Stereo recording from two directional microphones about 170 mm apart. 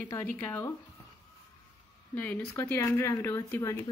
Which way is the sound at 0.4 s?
15° left (ahead or behind).